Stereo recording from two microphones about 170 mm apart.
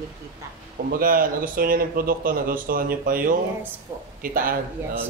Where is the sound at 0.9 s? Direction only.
55° right (ahead or behind).